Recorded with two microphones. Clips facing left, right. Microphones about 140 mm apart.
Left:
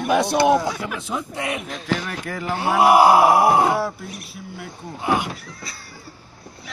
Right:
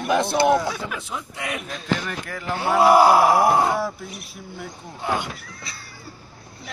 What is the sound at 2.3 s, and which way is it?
Speech, 20° left (ahead or behind).